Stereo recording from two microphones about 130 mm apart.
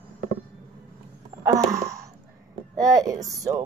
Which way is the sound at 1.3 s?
20° right (ahead or behind).